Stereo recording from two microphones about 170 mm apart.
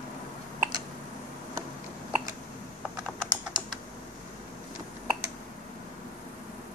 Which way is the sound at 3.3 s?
25° right (ahead or behind).